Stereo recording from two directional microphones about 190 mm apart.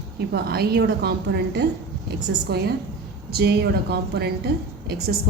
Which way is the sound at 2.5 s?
55° right (ahead or behind).